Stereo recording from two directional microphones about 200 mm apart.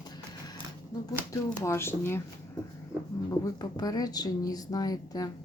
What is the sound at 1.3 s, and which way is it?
Speech, 15° left (ahead or behind).